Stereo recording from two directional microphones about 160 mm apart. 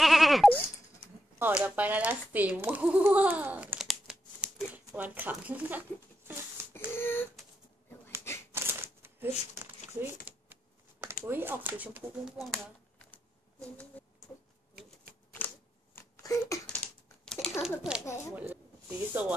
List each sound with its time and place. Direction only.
0.0 s sheep: centre (ahead or behind)
1.4 s speech: 10° right (ahead or behind)
6.7 s a sound: 15° left (ahead or behind)
8.5 s shuffling cards: 15° right (ahead or behind)
10.2 s typing: 15° right (ahead or behind)
11.2 s speech: 15° right (ahead or behind)
14.0 s a sound: 10° left (ahead or behind)
15.3 s a sound: 10° left (ahead or behind)
16.6 s typing: 5° left (ahead or behind)
18.0 s speech: 20° left (ahead or behind)
18.3 s speech: 15° right (ahead or behind)